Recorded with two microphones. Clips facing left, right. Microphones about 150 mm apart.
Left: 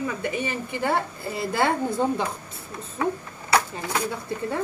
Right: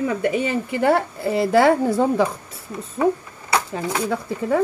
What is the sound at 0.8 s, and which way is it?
Speech, 85° right.